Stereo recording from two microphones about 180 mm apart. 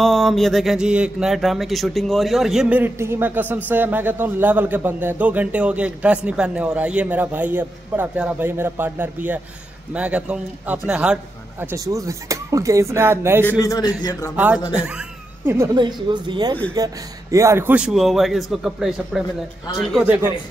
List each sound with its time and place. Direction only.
0.0 s speech: centre (ahead or behind)
11.6 s speech: 15° right (ahead or behind)
13.5 s a man's voice: 20° left (ahead or behind)
14.3 s a man's voice: 10° right (ahead or behind)